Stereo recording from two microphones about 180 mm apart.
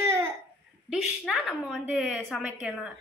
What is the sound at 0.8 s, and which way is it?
A woman's voice, 5° right (ahead or behind).